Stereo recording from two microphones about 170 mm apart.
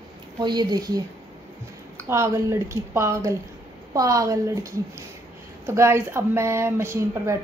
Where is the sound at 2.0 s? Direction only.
15° right (ahead or behind).